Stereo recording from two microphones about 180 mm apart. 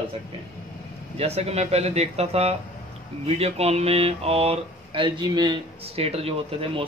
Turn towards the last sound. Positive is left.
turn(degrees=-35)  # may be behind; listen again after turning